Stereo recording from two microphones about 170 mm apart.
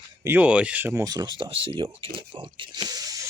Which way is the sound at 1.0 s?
25° right (ahead or behind).